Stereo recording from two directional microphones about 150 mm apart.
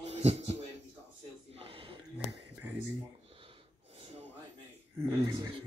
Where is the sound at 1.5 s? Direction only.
35° right (ahead or behind).